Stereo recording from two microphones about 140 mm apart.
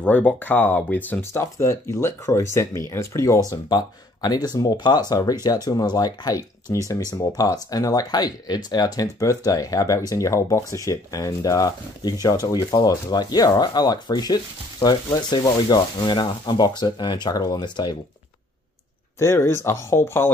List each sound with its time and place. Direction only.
0.0 s speech: 10° left (ahead or behind); by 17.9 s 30° left (ahead or behind)
19.1 s speech: 20° left (ahead or behind)